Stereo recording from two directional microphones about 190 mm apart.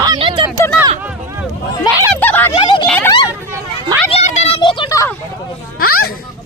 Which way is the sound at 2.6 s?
25° left (ahead or behind).